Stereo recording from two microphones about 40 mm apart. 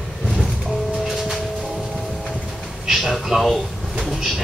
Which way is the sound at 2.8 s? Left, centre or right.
Centre.